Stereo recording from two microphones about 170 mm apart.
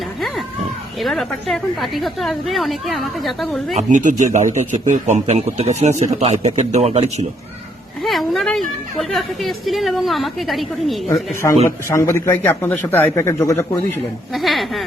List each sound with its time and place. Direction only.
1.0 s a woman's voice: centre (ahead or behind)
3.8 s a man's voice: 45° right (ahead or behind)
8.0 s a woman's voice: centre (ahead or behind)
11.9 s speech: 15° left (ahead or behind)
14.3 s a woman's voice: centre (ahead or behind)